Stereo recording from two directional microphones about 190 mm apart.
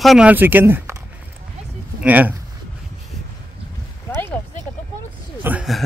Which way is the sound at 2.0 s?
10° right (ahead or behind).